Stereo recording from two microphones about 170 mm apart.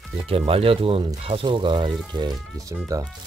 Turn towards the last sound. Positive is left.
turn(degrees=-20)  # may be behind; listen again after turning